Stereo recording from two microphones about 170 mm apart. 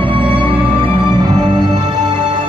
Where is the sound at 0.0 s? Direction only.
30° right (ahead or behind).